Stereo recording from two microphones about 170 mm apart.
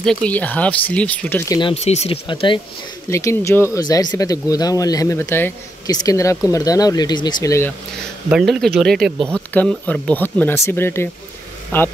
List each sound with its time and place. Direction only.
0.0 s speech: 5° left (ahead or behind)
1.5 s speech: 30° left (ahead or behind)
3.1 s speech: 15° left (ahead or behind)
8.3 s speech: centre (ahead or behind)